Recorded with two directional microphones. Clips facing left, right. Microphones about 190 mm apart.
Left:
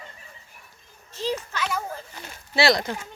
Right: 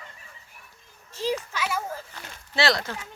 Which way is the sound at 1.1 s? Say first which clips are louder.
Even; 10° right (ahead or behind).